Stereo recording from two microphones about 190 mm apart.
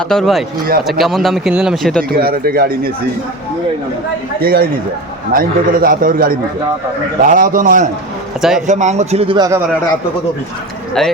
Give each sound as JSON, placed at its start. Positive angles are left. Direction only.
{"t": 0.1, "sound": "speech", "side_deg": 0}
{"t": 2.1, "sound": "a man's voice", "side_deg": -50}
{"t": 4.4, "sound": "a man's voice", "side_deg": -50}
{"t": 8.4, "sound": "speech", "side_deg": 0}
{"t": 8.6, "sound": "a man's voice", "side_deg": -40}